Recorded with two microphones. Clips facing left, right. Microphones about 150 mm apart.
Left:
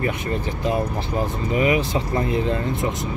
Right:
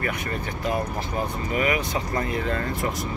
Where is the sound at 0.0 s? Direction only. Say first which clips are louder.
Left 4 dB; 25° left (ahead or behind).